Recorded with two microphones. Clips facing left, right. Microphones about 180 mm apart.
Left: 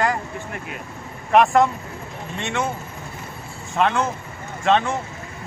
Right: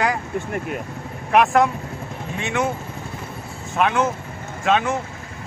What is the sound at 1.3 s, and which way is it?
Speech, centre (ahead or behind).